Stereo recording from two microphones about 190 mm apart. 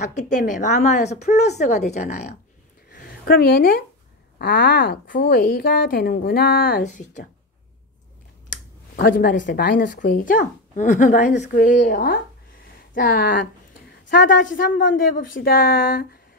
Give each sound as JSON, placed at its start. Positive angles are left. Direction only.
{"t": 0.0, "sound": "speech", "side_deg": 40}
{"t": 2.9, "sound": "a sound", "side_deg": 50}
{"t": 4.4, "sound": "a woman's voice", "side_deg": 50}
{"t": 8.9, "sound": "a woman's voice", "side_deg": 50}